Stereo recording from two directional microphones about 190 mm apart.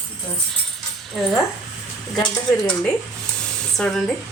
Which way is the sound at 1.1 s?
Centre (ahead or behind).